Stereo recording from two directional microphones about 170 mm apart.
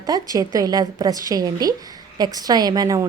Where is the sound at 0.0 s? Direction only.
20° right (ahead or behind).